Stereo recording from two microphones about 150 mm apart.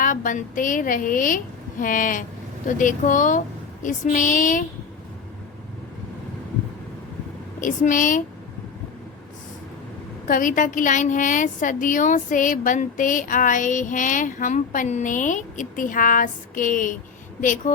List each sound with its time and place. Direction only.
0.0 s a woman's voice: 60° left (ahead or behind)
7.6 s a woman's voice: 60° left (ahead or behind)
10.2 s a woman's voice: 65° left (ahead or behind)